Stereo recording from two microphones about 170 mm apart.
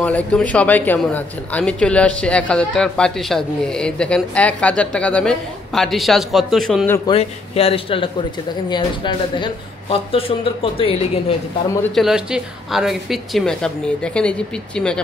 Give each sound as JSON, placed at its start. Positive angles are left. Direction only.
{"t": 0.0, "sound": "speech", "side_deg": 5}
{"t": 7.1, "sound": "speech", "side_deg": 35}
{"t": 11.9, "sound": "speech", "side_deg": 0}